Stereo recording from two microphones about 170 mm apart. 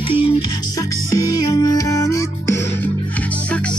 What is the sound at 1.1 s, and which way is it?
Music, 20° left (ahead or behind).